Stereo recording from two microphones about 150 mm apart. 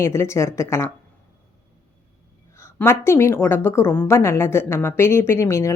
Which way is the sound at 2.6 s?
15° left (ahead or behind).